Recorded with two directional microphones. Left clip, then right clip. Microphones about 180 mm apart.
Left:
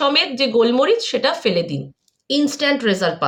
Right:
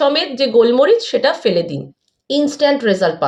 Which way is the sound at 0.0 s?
15° left (ahead or behind).